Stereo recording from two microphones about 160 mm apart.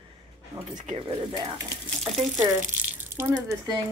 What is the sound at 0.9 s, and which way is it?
A woman's voice, 30° right (ahead or behind).